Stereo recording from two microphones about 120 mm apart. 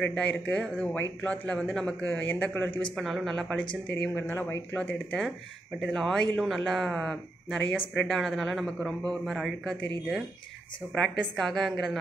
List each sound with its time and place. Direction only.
0.0 s a man's voice: 10° left (ahead or behind)
3.0 s a man's voice: centre (ahead or behind); by 4.6 s 20° left (ahead or behind)
4.7 s a man's voice: 10° left (ahead or behind)